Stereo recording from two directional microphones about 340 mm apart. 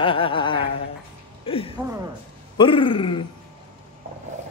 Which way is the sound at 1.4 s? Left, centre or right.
Centre.